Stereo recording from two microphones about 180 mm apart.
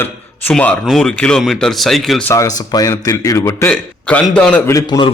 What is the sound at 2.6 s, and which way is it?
A man's voice, 20° left (ahead or behind).